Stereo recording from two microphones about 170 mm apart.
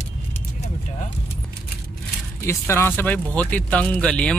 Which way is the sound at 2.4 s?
15° left (ahead or behind).